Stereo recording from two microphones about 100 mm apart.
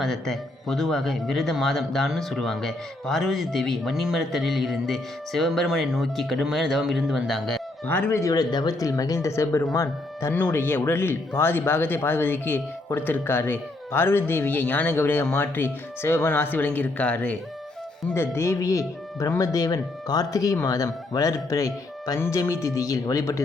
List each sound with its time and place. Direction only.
0.0 s speech: centre (ahead or behind)
7.9 s speech: 20° left (ahead or behind)
8.2 s speech: 40° left (ahead or behind); by 17.3 s 15° left (ahead or behind)
18.1 s speech: 25° left (ahead or behind)